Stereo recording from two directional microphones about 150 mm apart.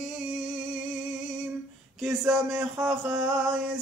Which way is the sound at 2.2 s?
5° right (ahead or behind).